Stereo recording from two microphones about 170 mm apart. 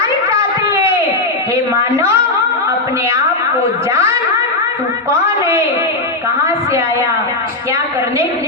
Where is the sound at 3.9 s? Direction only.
20° right (ahead or behind).